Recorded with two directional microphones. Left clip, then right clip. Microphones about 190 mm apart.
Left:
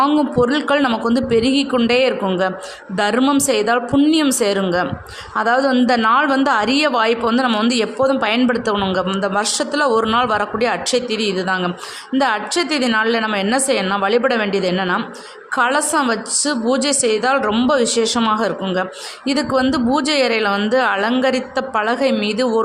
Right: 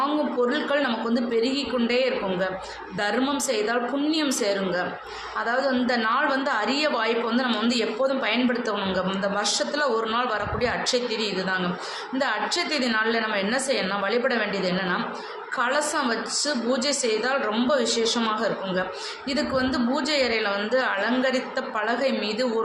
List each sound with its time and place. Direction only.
0.0 s a woman's voice: 55° left (ahead or behind)